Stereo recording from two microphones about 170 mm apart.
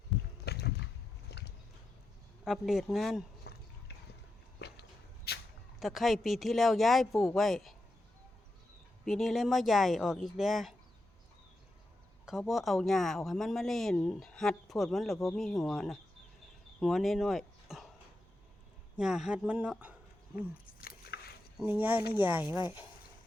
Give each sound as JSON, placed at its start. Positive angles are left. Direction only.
{"t": 0.4, "sound": "rowboat", "side_deg": 70}
{"t": 1.3, "sound": "a sound", "side_deg": 80}
{"t": 2.4, "sound": "speech", "side_deg": 0}
{"t": 3.5, "sound": "a sound", "side_deg": 70}
{"t": 4.6, "sound": "a sound", "side_deg": 75}
{"t": 5.8, "sound": "speech", "side_deg": 0}
{"t": 9.0, "sound": "speech", "side_deg": 0}
{"t": 12.2, "sound": "speech", "side_deg": 0}
{"t": 18.9, "sound": "speech", "side_deg": -5}
{"t": 20.8, "sound": "biting", "side_deg": 70}
{"t": 21.6, "sound": "speech", "side_deg": -10}